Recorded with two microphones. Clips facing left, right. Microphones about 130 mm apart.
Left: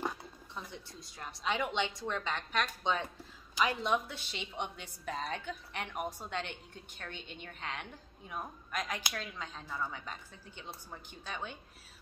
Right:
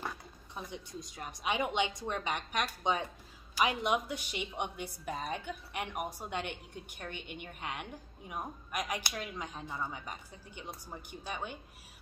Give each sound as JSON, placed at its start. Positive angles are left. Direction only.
{"t": 0.6, "sound": "a woman's voice", "side_deg": -15}